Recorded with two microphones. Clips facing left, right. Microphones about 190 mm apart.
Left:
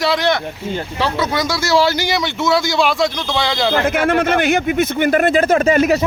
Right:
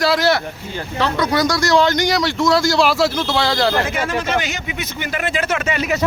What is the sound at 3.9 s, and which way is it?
Speech, 55° left (ahead or behind).